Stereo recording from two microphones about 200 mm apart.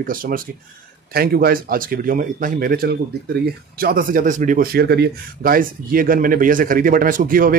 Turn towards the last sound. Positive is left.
turn(degrees=-45)  # may be behind; listen again after turning